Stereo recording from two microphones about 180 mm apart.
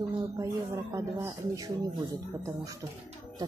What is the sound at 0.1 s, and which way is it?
Speech, 20° right (ahead or behind).